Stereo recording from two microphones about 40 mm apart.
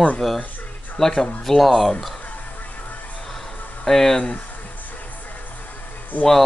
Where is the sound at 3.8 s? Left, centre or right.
Centre.